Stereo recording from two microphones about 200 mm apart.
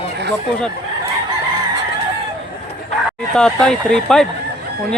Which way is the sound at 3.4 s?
5° left (ahead or behind).